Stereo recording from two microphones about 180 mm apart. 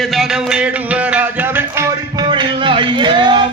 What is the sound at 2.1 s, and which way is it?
Music, 25° right (ahead or behind).